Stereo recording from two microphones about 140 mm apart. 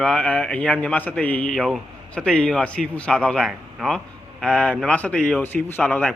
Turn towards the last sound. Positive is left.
turn(degrees=10)  # may be behind; listen again after turning